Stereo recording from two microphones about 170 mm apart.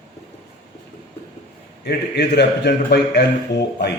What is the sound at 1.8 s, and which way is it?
A man's voice, 85° left.